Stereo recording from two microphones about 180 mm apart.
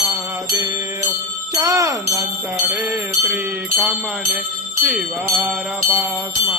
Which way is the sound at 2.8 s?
5° right (ahead or behind).